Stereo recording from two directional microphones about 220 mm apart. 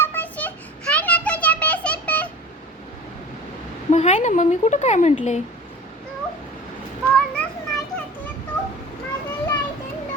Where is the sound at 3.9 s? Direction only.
30° left (ahead or behind).